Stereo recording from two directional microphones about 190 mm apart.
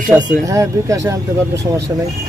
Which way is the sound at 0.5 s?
15° right (ahead or behind).